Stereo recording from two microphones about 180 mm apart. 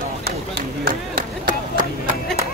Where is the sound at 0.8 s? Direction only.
55° right (ahead or behind).